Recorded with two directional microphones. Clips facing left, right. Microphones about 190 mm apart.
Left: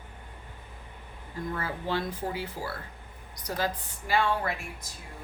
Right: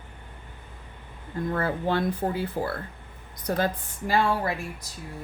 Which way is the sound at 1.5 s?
55° right (ahead or behind).